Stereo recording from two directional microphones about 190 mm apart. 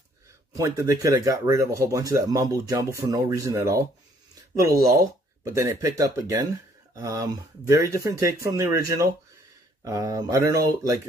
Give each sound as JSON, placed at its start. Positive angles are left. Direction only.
{"t": 0.6, "sound": "speech", "side_deg": -15}
{"t": 5.4, "sound": "speech", "side_deg": -15}